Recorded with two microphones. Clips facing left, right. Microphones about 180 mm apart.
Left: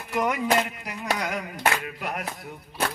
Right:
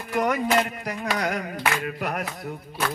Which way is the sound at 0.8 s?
45° right (ahead or behind).